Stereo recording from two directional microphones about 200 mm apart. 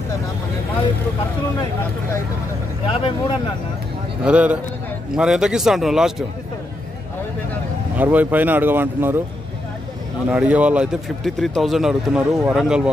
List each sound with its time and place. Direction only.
2.9 s speech: 30° left (ahead or behind)
4.2 s speech: 5° right (ahead or behind)
7.9 s speech: 10° right (ahead or behind)
10.3 s speech: 5° right (ahead or behind)